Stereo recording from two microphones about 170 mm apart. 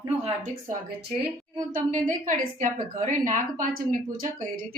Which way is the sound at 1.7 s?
50° right (ahead or behind).